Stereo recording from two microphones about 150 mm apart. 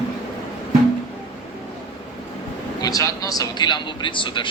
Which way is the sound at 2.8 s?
25° left (ahead or behind).